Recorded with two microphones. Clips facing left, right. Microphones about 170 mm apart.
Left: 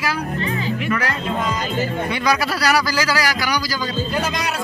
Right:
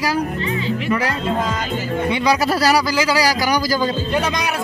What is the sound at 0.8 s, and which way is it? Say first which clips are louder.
Music: right 3 dB; 25° right (ahead or behind).